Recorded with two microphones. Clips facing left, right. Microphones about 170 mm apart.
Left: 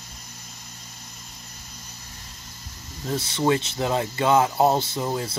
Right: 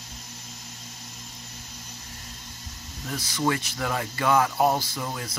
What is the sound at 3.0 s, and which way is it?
Speech, 25° left (ahead or behind).